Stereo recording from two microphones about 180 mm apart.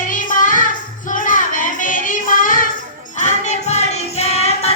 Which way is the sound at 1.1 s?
45° left (ahead or behind).